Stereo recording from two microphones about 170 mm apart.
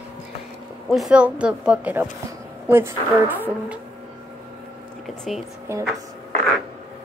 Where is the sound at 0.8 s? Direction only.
Centre (ahead or behind).